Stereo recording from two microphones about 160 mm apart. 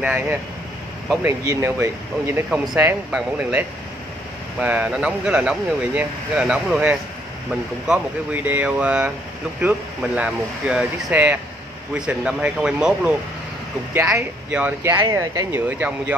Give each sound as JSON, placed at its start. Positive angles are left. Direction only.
{"t": 0.0, "sound": "speech", "side_deg": -10}
{"t": 1.4, "sound": "speech", "side_deg": -20}